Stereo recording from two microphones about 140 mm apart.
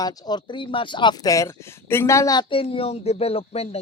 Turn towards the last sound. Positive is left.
turn(degrees=45)  # may be behind; listen again after turning